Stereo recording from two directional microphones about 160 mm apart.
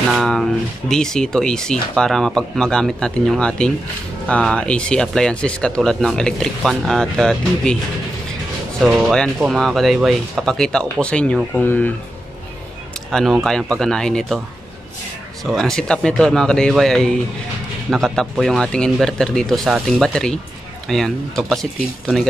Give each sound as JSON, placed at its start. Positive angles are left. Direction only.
{"t": 0.1, "sound": "speech", "side_deg": 0}
{"t": 8.8, "sound": "speech", "side_deg": 0}
{"t": 13.1, "sound": "speech", "side_deg": 0}
{"t": 15.4, "sound": "speech", "side_deg": 0}